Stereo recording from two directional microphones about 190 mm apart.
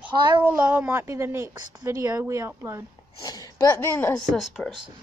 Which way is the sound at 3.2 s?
20° left (ahead or behind).